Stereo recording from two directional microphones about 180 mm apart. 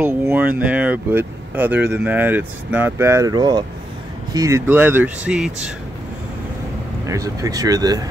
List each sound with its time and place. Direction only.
0.0 s speech: 10° right (ahead or behind)
7.1 s speech: 20° right (ahead or behind)